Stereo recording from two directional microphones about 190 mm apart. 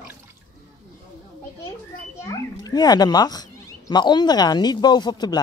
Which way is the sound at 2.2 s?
20° left (ahead or behind).